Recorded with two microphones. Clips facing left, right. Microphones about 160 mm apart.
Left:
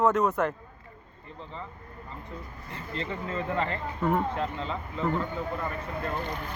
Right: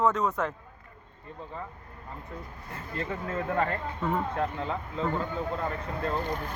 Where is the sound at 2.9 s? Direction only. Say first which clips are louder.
Even; 55° right (ahead or behind).